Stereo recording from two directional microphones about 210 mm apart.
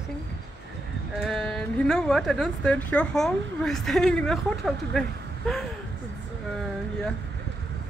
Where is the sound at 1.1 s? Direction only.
Centre (ahead or behind).